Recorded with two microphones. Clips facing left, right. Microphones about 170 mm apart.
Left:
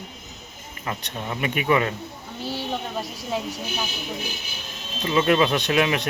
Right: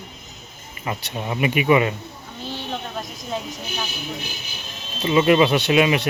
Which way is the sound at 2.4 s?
10° left (ahead or behind).